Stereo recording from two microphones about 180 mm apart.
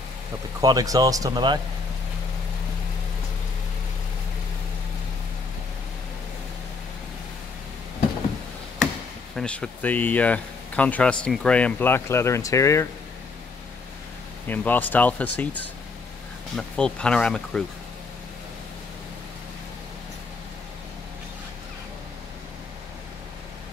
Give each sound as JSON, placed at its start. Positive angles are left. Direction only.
{"t": 0.6, "sound": "speech", "side_deg": -20}
{"t": 9.3, "sound": "speech", "side_deg": 5}
{"t": 14.5, "sound": "speech", "side_deg": 10}